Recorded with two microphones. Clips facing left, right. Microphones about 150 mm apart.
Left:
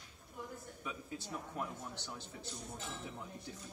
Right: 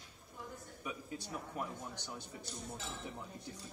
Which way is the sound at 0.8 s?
10° right (ahead or behind).